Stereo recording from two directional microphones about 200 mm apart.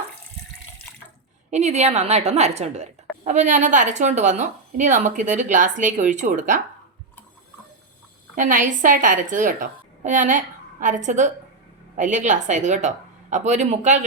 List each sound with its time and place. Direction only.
1.5 s a woman's voice: 35° right (ahead or behind)
8.4 s a woman's voice: 40° right (ahead or behind)